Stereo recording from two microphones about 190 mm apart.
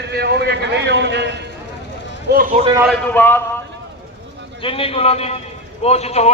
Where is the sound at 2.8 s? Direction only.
10° left (ahead or behind).